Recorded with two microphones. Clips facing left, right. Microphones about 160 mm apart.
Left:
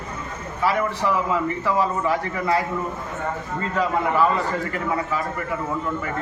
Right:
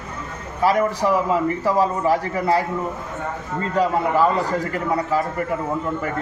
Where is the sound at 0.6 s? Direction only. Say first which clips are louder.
Right 4 dB; 40° right (ahead or behind).